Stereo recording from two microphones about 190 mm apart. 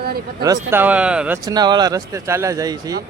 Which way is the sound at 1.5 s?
20° right (ahead or behind).